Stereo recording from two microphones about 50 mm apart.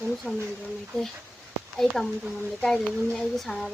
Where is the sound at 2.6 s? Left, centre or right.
Centre.